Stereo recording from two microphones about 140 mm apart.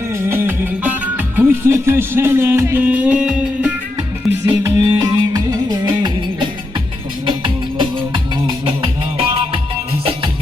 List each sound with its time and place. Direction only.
0.1 s music: 15° right (ahead or behind)
4.4 s music: 20° right (ahead or behind); by 9.6 s 40° right (ahead or behind)